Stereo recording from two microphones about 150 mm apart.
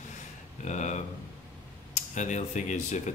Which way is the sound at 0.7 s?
50° left (ahead or behind).